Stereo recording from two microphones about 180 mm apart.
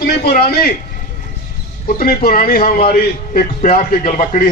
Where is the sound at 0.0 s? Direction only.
60° left (ahead or behind).